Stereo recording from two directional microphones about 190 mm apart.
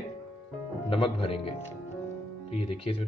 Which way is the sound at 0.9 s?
30° left (ahead or behind).